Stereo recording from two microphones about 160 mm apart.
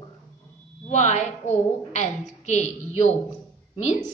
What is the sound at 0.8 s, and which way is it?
A woman's voice, 45° left (ahead or behind).